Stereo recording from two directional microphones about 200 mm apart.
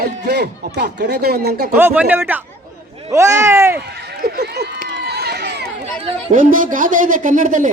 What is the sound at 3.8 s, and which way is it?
Speech, 55° right (ahead or behind).